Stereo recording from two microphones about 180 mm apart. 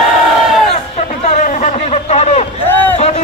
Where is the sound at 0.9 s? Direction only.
40° left (ahead or behind).